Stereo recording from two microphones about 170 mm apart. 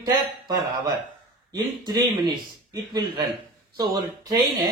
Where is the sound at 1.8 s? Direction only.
25° right (ahead or behind).